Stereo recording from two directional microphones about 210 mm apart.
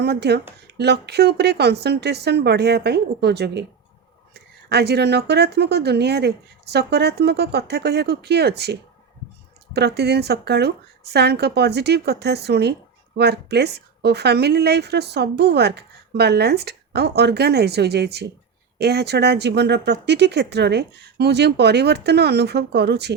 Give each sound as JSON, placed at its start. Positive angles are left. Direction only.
{"t": 0.0, "sound": "a woman's voice", "side_deg": -55}